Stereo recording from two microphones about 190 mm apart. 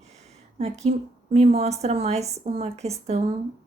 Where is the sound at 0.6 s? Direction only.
35° right (ahead or behind).